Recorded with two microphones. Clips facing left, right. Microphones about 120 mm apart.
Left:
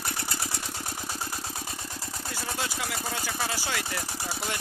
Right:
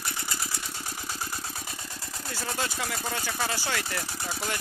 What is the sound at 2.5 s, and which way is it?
Speech, 15° left (ahead or behind).